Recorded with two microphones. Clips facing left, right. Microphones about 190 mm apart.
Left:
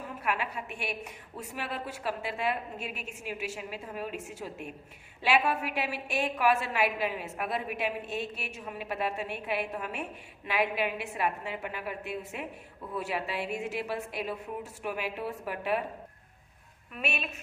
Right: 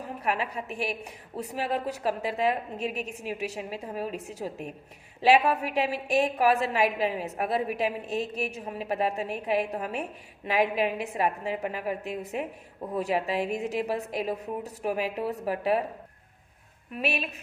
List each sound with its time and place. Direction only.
0.2 s a woman's voice: 35° right (ahead or behind)
17.0 s a woman's voice: 35° right (ahead or behind)